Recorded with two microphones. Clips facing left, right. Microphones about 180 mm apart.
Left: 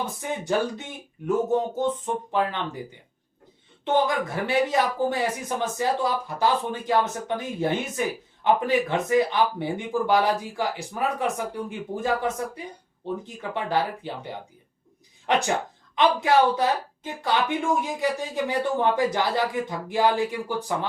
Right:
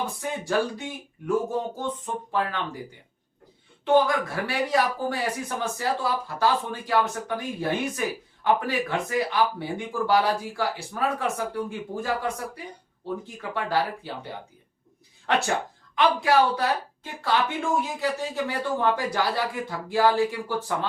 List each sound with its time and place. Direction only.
0.0 s a man's voice: 20° left (ahead or behind)
3.8 s a man's voice: 20° left (ahead or behind)
15.3 s speech: 15° left (ahead or behind)